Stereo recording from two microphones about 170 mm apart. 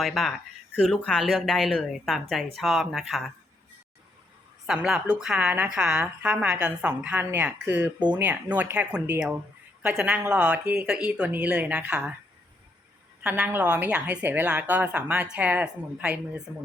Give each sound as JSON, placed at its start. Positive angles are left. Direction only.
{"t": 0.0, "sound": "speech", "side_deg": 0}
{"t": 4.6, "sound": "a woman's voice", "side_deg": -5}
{"t": 7.9, "sound": "speech", "side_deg": -25}
{"t": 8.2, "sound": "a woman's voice", "side_deg": -10}
{"t": 13.2, "sound": "a woman's voice", "side_deg": -5}